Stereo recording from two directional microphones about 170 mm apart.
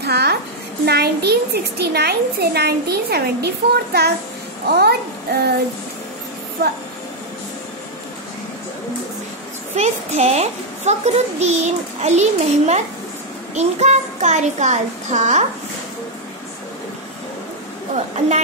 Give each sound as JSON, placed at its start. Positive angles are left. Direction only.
{"t": 0.0, "sound": "a woman's voice", "side_deg": -75}
{"t": 9.8, "sound": "a child's voice", "side_deg": -40}